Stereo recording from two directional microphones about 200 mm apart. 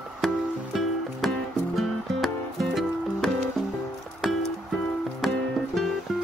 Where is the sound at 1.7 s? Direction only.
Centre (ahead or behind).